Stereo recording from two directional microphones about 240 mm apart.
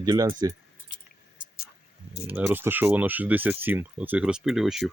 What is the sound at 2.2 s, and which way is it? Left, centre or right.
Speech, centre.